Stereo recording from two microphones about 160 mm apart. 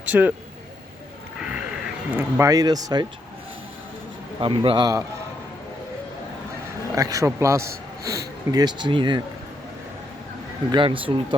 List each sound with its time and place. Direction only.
0.0 s speech: 10° right (ahead or behind)
1.4 s crow: 5° right (ahead or behind)
2.4 s speech: 20° right (ahead or behind)
4.4 s a man's voice: 30° right (ahead or behind)
6.9 s speech: 20° right (ahead or behind)
8.5 s speech: 25° right (ahead or behind)
10.7 s a man's voice: 30° right (ahead or behind)